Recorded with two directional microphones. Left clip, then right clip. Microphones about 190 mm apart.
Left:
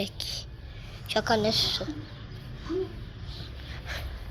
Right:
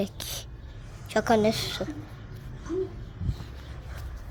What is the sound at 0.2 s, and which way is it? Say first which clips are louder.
A woman's voice: left 2 dB; 40° right (ahead or behind).